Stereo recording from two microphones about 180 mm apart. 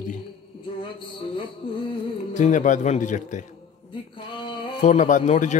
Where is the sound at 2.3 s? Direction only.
45° left (ahead or behind).